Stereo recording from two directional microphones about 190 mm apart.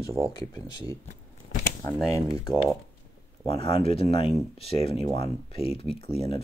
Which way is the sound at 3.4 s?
30° left (ahead or behind).